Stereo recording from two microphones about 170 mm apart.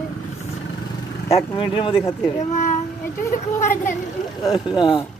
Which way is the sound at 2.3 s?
45° left (ahead or behind).